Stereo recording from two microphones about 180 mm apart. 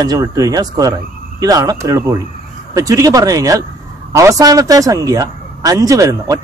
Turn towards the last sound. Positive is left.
turn(degrees=-20)  # may be behind; listen again after turning